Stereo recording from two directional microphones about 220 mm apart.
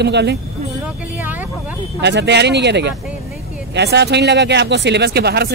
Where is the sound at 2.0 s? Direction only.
50° right (ahead or behind).